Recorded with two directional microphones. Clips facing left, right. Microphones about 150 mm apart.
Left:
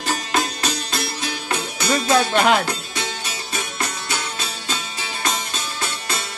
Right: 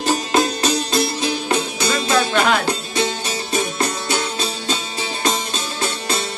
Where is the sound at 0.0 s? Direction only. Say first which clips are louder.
Right 5 dB; 25° right (ahead or behind).